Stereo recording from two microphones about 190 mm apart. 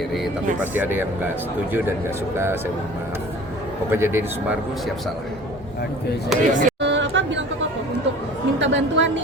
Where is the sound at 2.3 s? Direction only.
10° right (ahead or behind).